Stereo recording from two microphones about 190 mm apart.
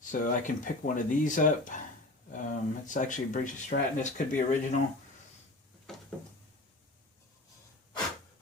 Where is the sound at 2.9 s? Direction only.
40° left (ahead or behind).